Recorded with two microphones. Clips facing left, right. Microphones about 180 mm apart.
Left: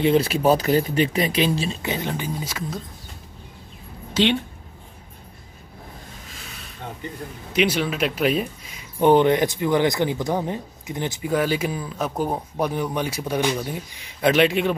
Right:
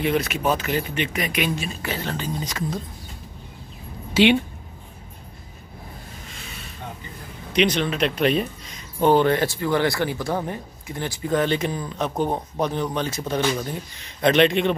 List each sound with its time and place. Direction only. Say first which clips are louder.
0.0 s speech: left 4 dB; 30° left (ahead or behind); by 2.8 s 5° left (ahead or behind)
4.1 s speech: right 3 dB; 10° right (ahead or behind)
6.2 s a sound: right 2 dB; centre (ahead or behind)
7.5 s speech: right 1 dB; 5° left (ahead or behind)
9.1 s speech: left 2 dB; 20° left (ahead or behind)